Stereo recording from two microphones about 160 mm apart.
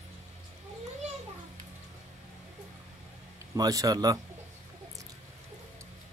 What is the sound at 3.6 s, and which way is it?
Speech, 20° right (ahead or behind).